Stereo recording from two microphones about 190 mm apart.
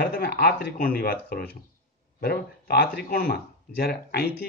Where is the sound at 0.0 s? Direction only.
55° left (ahead or behind).